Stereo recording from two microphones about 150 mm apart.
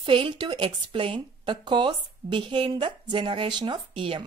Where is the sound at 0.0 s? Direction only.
35° right (ahead or behind).